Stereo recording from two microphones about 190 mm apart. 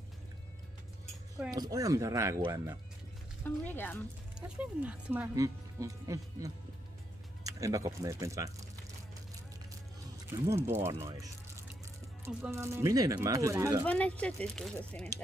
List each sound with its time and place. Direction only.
1.5 s speech: 20° right (ahead or behind)
3.4 s speech: 10° left (ahead or behind)
4.4 s speech: 5° right (ahead or behind)
5.3 s speech: 15° right (ahead or behind)
10.4 s speech: 15° right (ahead or behind)
13.8 s speech: 5° left (ahead or behind)